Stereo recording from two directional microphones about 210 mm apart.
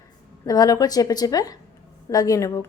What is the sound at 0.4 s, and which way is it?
A woman's voice, 15° left (ahead or behind).